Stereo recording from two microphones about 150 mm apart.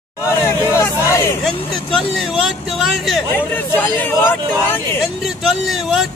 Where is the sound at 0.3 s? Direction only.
15° left (ahead or behind).